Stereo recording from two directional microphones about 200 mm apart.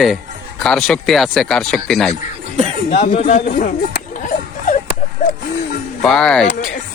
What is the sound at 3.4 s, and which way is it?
Speech, 45° left (ahead or behind).